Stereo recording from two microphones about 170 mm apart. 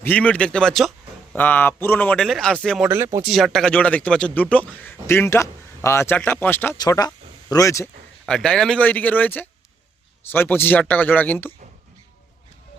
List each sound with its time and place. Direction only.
0.0 s a man's voice: 10° left (ahead or behind)
2.9 s speech: 15° right (ahead or behind)
3.2 s speech: centre (ahead or behind)
6.7 s speech: 25° left (ahead or behind)
8.3 s speech: 5° left (ahead or behind)